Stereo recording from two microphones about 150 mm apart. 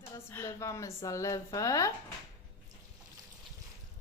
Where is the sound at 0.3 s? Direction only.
15° left (ahead or behind).